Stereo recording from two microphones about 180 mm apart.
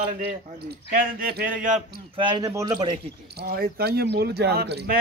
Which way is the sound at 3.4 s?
60° right (ahead or behind).